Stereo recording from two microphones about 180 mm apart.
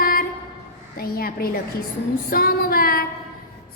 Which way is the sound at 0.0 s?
55° left (ahead or behind).